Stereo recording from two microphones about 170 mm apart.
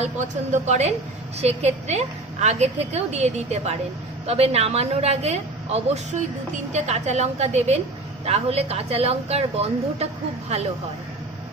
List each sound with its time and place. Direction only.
0.0 s a woman's voice: 40° right (ahead or behind)